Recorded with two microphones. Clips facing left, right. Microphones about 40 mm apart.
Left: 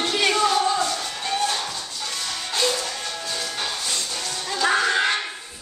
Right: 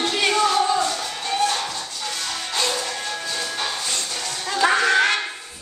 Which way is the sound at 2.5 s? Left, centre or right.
Centre.